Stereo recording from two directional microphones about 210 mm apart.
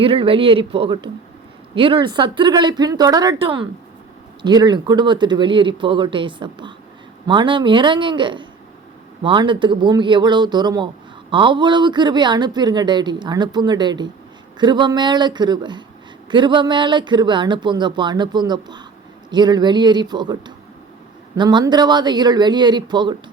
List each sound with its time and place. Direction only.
0.0 s speech: 25° right (ahead or behind)